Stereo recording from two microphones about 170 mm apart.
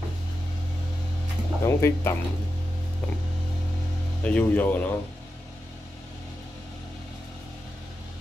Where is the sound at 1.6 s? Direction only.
15° left (ahead or behind).